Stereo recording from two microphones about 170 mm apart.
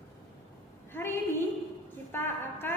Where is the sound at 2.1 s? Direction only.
15° left (ahead or behind).